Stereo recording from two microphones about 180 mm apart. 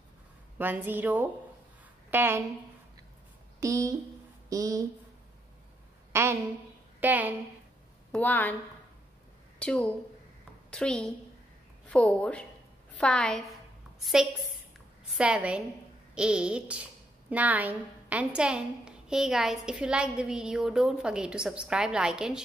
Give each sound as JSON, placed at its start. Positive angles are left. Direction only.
{"t": 0.6, "sound": "a woman's voice", "side_deg": -10}
{"t": 3.6, "sound": "a woman's voice", "side_deg": -15}
{"t": 6.1, "sound": "a woman's voice", "side_deg": -15}
{"t": 8.1, "sound": "a woman's voice", "side_deg": 10}
{"t": 9.6, "sound": "a woman's voice", "side_deg": 5}